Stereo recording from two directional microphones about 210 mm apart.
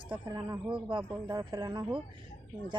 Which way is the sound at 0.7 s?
25° right (ahead or behind).